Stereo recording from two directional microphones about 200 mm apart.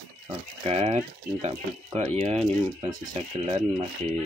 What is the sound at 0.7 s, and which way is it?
Speech, 30° right (ahead or behind).